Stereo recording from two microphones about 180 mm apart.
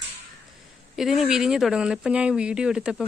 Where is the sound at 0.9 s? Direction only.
Centre (ahead or behind).